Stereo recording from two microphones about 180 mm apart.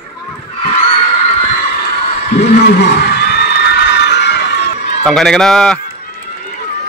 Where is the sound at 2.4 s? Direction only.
60° left (ahead or behind).